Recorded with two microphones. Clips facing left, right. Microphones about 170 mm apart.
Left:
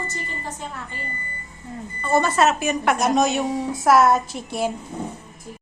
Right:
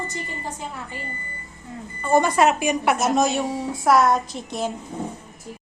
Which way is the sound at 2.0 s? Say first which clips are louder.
Right 1 dB; 15° right (ahead or behind).